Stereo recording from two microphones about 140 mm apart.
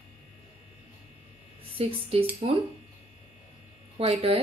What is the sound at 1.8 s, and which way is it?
Speech, 45° right (ahead or behind).